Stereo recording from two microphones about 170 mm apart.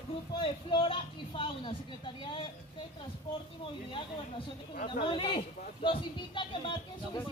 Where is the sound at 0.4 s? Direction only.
30° left (ahead or behind).